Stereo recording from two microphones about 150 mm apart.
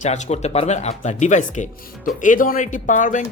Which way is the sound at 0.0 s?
50° left (ahead or behind).